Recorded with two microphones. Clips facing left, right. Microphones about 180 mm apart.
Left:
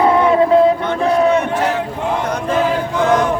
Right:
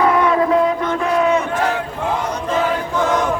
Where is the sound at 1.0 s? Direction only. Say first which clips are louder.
Left 3 dB; 35° left (ahead or behind).